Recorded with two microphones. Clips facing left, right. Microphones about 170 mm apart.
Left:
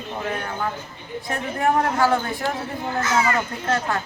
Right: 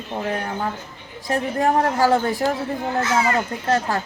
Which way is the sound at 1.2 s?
35° right (ahead or behind).